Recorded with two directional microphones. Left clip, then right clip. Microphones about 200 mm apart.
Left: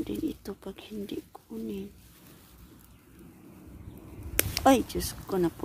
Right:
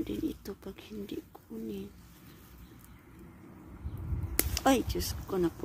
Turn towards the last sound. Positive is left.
turn(degrees=20)  # may be behind; listen again after turning